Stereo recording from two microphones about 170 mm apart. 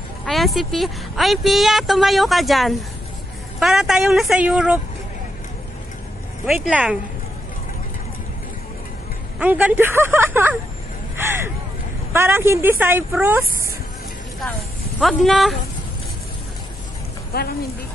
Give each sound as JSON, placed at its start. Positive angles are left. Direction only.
{"t": 0.2, "sound": "a woman's voice", "side_deg": 0}
{"t": 6.4, "sound": "a woman's voice", "side_deg": -5}
{"t": 9.4, "sound": "speech", "side_deg": -10}
{"t": 11.1, "sound": "a sound", "side_deg": -15}
{"t": 12.1, "sound": "speech", "side_deg": -15}
{"t": 15.0, "sound": "a woman's voice", "side_deg": 0}
{"t": 17.3, "sound": "speech", "side_deg": 65}